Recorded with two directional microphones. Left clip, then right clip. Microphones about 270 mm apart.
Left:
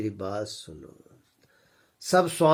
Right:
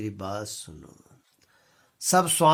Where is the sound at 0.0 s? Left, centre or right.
Right.